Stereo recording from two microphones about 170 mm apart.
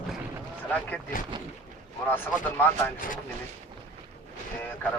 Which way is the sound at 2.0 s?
10° left (ahead or behind).